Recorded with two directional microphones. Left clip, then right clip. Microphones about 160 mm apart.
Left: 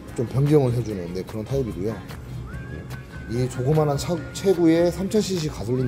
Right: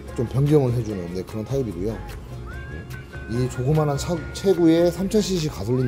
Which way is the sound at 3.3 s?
5° right (ahead or behind).